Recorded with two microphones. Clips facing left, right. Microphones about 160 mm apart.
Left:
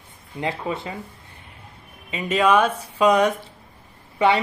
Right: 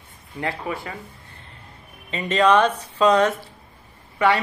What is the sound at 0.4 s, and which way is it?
Speech, 20° left (ahead or behind).